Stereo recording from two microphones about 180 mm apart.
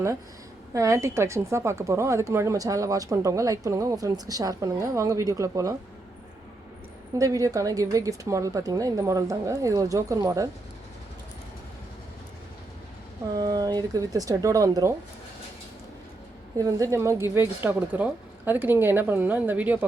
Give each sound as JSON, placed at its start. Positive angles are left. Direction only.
{"t": 0.7, "sound": "a woman's voice", "side_deg": -15}
{"t": 7.2, "sound": "a woman's voice", "side_deg": -20}
{"t": 13.3, "sound": "a woman's voice", "side_deg": -20}
{"t": 16.6, "sound": "a woman's voice", "side_deg": -20}